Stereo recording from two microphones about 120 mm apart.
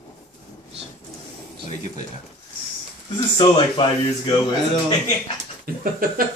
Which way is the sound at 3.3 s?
40° left (ahead or behind).